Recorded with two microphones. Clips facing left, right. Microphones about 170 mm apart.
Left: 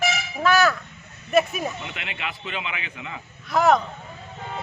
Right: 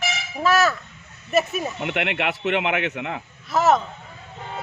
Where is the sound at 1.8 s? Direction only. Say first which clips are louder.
Right 10 dB; 70° right (ahead or behind).